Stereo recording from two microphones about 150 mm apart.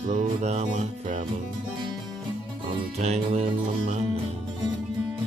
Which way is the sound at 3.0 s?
45° right (ahead or behind).